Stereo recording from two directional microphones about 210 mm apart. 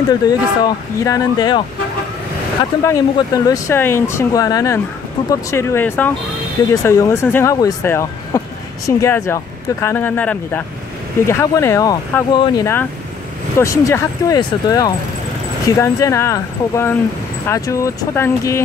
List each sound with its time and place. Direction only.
0.1 s speech: 20° left (ahead or behind)
2.8 s speech: 15° left (ahead or behind)